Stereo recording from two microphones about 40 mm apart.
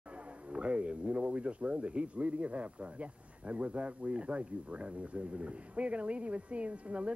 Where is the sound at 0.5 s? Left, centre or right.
Right.